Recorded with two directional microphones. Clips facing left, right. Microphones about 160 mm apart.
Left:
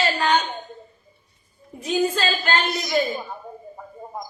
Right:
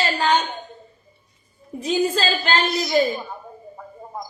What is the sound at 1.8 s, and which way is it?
Speech, 30° right (ahead or behind).